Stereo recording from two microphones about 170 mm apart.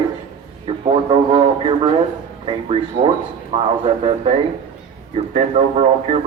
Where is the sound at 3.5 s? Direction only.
35° right (ahead or behind).